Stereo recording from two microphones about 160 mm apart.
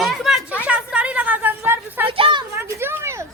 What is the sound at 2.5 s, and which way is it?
Speech, 15° right (ahead or behind).